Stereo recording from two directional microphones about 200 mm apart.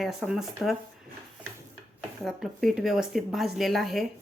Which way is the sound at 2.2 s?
Centre (ahead or behind).